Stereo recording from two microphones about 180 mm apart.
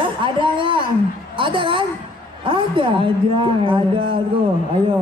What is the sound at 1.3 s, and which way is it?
A woman's voice, 30° right (ahead or behind).